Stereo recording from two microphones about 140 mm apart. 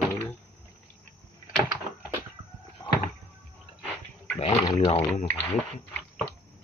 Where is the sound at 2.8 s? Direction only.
25° left (ahead or behind).